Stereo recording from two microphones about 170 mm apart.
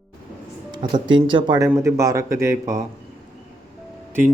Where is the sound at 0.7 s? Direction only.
30° right (ahead or behind).